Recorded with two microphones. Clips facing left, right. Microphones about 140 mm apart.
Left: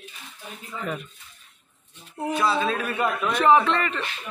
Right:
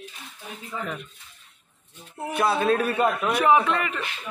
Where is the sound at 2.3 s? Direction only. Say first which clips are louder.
Right 3 dB; 55° right (ahead or behind).